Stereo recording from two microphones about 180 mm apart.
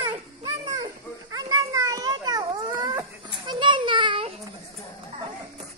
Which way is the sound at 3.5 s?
25° right (ahead or behind).